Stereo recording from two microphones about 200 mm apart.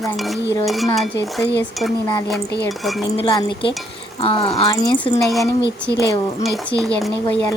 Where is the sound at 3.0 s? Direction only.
20° left (ahead or behind).